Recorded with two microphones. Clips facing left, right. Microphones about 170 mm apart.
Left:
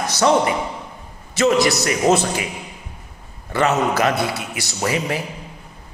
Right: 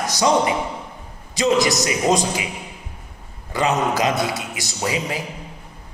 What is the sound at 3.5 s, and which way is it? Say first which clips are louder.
A man's voice: left 2 dB; 15° right (ahead or behind).